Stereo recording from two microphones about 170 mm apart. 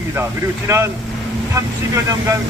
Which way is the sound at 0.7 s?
15° right (ahead or behind).